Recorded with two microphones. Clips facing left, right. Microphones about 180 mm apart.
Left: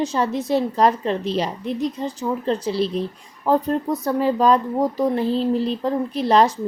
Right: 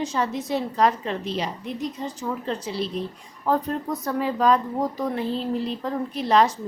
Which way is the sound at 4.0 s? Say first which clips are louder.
Left 3 dB; 30° left (ahead or behind).